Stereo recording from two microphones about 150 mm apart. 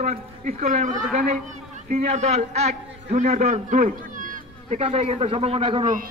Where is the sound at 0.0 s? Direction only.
60° right (ahead or behind).